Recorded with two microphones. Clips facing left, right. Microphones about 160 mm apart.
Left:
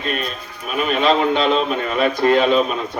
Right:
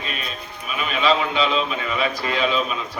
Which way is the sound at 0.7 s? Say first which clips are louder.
Left 4 dB; 45° left (ahead or behind).